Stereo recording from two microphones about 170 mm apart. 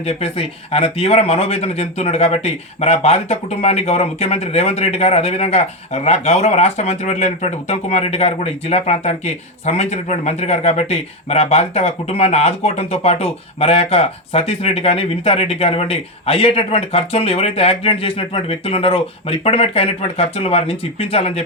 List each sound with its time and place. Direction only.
0.0 s speech: 35° left (ahead or behind)